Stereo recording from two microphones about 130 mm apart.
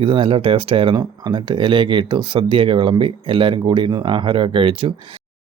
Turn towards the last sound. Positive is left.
turn(degrees=-40)  # may be behind; listen again after turning